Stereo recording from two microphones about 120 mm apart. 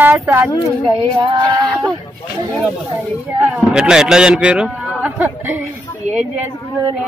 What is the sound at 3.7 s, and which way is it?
A man's voice, 5° right (ahead or behind).